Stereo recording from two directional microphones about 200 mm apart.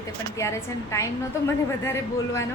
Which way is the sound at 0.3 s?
15° left (ahead or behind).